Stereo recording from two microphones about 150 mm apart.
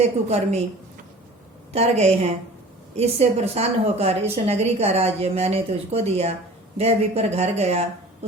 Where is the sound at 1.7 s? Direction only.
45° right (ahead or behind).